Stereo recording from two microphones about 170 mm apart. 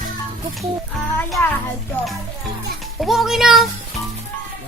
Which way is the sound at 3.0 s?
Centre (ahead or behind).